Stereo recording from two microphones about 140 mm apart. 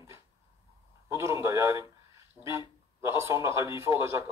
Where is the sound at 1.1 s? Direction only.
20° right (ahead or behind).